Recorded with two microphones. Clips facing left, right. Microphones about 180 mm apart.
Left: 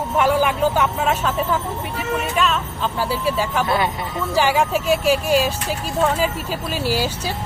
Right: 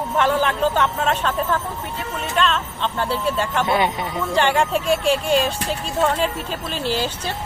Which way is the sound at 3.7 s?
20° right (ahead or behind).